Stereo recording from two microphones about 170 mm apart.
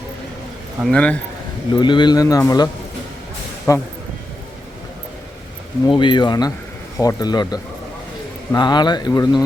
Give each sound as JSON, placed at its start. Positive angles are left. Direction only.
{"t": 0.9, "sound": "speech", "side_deg": 5}
{"t": 1.7, "sound": "speech", "side_deg": 25}
{"t": 3.7, "sound": "speech", "side_deg": 20}
{"t": 5.8, "sound": "speech", "side_deg": 30}